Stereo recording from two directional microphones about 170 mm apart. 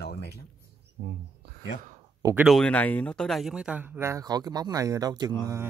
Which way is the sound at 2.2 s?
15° right (ahead or behind).